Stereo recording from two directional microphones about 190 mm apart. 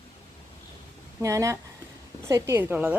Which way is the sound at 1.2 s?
15° right (ahead or behind).